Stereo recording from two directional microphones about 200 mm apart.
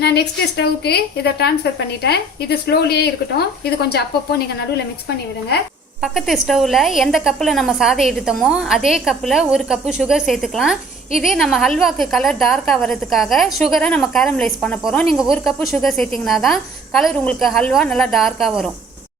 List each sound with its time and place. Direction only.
0.0 s a woman's voice: 55° left (ahead or behind)
6.0 s a woman's voice: centre (ahead or behind)